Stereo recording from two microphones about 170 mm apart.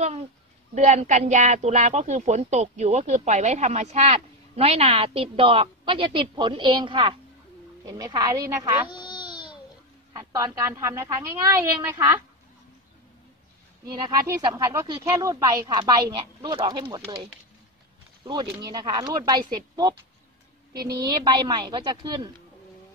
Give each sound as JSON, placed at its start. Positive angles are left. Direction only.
{"t": 0.7, "sound": "a woman's voice", "side_deg": -45}
{"t": 8.9, "sound": "baby cry", "side_deg": 25}
{"t": 10.1, "sound": "speech", "side_deg": -20}
{"t": 13.8, "sound": "speech", "side_deg": -25}
{"t": 18.2, "sound": "speech", "side_deg": -25}